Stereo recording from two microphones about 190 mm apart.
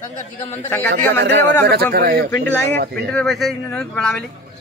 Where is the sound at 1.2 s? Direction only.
60° right (ahead or behind).